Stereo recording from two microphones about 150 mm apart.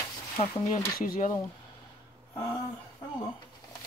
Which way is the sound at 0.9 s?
75° left (ahead or behind).